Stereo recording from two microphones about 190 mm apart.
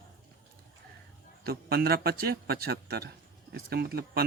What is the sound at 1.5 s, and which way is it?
A man's voice, 55° right (ahead or behind).